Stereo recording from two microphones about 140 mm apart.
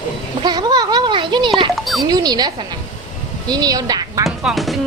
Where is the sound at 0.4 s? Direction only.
30° right (ahead or behind).